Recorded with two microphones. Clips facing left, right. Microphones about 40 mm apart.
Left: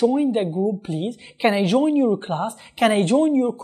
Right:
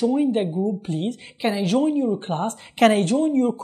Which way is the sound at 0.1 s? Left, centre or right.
Centre.